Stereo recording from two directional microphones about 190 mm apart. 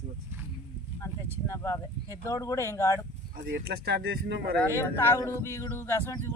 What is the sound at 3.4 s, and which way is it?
Speech, 60° right (ahead or behind).